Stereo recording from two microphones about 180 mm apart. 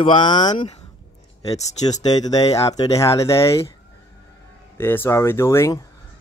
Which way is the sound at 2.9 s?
15° left (ahead or behind).